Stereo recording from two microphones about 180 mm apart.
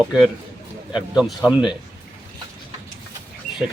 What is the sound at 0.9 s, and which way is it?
Speech, 5° right (ahead or behind).